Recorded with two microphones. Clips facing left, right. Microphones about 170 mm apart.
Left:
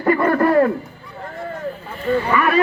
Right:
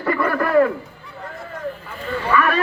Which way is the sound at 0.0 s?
30° left (ahead or behind).